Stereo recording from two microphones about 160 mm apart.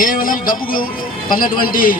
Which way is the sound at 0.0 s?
60° left (ahead or behind).